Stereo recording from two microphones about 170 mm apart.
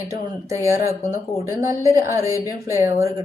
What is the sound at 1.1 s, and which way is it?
A woman's voice, 15° right (ahead or behind).